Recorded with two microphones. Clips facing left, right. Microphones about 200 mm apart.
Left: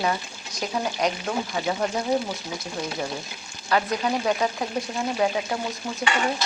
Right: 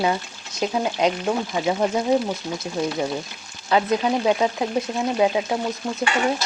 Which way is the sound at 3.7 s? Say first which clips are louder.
Right 4 dB; 20° right (ahead or behind).